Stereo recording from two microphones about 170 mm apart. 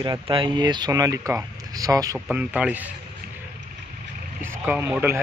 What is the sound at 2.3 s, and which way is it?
Speech, 10° right (ahead or behind).